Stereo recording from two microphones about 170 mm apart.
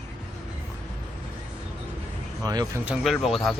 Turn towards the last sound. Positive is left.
turn(degrees=0)  # may be behind; listen again after turning